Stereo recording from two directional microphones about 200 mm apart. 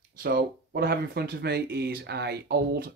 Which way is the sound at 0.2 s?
50° right (ahead or behind).